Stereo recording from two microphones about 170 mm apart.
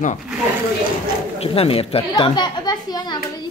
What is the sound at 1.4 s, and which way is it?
Speech, 35° left (ahead or behind).